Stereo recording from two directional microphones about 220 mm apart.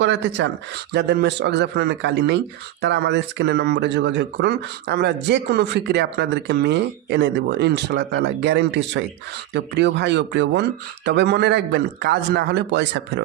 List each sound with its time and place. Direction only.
0.0 s speech: 55° right (ahead or behind)